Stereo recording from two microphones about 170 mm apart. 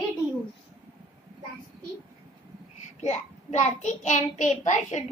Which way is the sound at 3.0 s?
45° left (ahead or behind).